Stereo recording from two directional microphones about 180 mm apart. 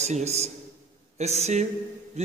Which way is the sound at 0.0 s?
40° right (ahead or behind).